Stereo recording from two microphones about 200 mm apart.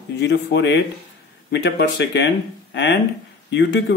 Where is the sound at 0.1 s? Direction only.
60° left (ahead or behind).